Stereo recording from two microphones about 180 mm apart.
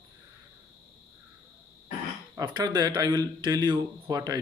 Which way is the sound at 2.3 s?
25° right (ahead or behind).